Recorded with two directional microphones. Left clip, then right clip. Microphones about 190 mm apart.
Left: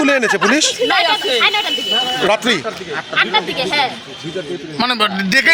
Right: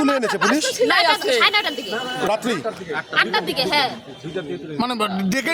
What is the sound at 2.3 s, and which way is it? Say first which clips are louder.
Speech: left 6 dB; 25° left (ahead or behind).